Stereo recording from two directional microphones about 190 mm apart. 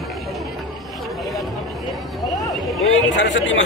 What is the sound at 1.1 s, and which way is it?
Vehicle, centre (ahead or behind).